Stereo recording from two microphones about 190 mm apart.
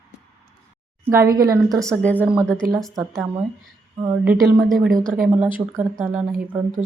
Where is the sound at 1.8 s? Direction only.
10° left (ahead or behind).